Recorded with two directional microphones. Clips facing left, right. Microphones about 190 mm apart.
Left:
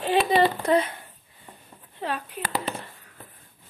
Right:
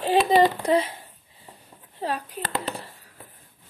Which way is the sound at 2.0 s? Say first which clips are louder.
Right 2 dB; 40° right (ahead or behind).